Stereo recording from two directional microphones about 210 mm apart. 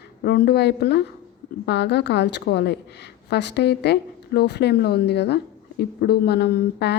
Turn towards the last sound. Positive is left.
turn(degrees=50)  # may be behind; listen again after turning